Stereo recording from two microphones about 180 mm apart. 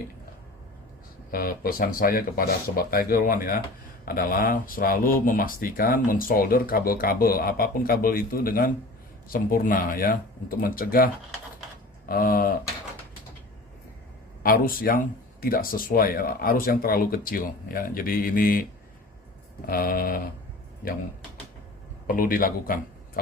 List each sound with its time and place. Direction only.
1.3 s speech: 55° left (ahead or behind)
14.4 s speech: 55° left (ahead or behind)
19.6 s speech: 55° left (ahead or behind)
22.0 s speech: 50° left (ahead or behind)